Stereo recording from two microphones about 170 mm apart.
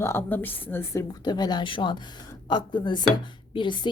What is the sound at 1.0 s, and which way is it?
Speech, 25° left (ahead or behind).